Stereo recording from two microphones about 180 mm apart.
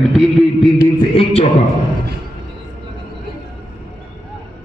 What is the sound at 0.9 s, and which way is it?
Music, 30° left (ahead or behind).